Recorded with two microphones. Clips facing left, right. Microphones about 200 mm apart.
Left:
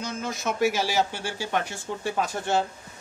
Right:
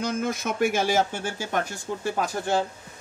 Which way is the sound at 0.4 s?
55° right (ahead or behind).